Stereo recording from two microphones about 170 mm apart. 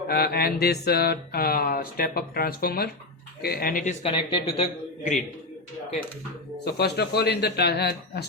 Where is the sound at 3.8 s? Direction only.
35° left (ahead or behind).